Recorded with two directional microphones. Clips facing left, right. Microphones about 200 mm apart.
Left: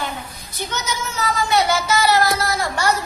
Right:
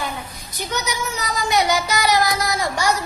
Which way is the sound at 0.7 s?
15° right (ahead or behind).